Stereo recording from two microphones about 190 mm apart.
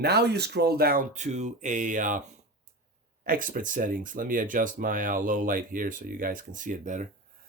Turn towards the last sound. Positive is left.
turn(degrees=-40)  # may be behind; listen again after turning